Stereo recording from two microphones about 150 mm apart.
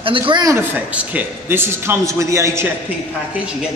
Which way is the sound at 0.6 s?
10° right (ahead or behind).